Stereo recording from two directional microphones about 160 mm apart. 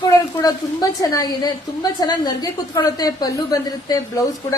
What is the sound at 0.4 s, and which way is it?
A woman's voice, 25° left (ahead or behind).